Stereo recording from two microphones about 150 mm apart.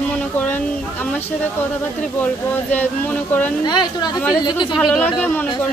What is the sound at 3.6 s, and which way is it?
Speech, 30° left (ahead or behind).